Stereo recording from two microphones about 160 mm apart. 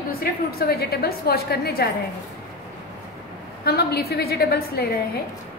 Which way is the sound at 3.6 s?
85° left.